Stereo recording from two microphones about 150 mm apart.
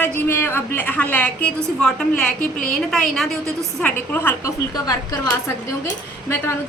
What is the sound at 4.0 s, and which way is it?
A woman's voice, 15° left (ahead or behind).